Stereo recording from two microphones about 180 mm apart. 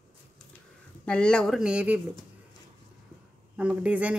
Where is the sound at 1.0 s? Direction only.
5° left (ahead or behind).